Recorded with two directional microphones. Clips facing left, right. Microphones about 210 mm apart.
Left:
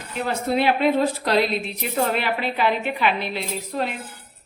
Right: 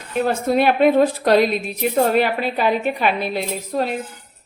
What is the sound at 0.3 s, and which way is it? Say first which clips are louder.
A woman's voice: right 3 dB; 50° right (ahead or behind).